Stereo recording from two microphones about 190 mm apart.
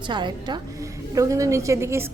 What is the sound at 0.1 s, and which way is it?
A woman's voice, 25° right (ahead or behind).